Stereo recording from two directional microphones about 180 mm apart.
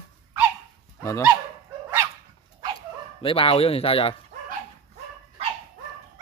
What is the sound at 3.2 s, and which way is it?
Speech, 30° left (ahead or behind).